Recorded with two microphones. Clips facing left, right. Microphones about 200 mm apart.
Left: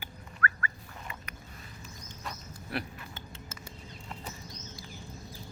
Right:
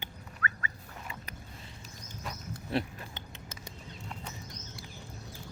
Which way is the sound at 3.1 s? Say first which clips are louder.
Left 1 dB; 20° right (ahead or behind).